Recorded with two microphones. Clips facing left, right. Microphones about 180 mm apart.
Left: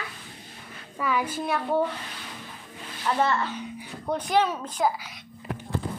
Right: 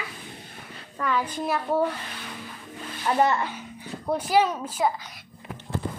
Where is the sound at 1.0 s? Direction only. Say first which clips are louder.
Even; 10° left (ahead or behind).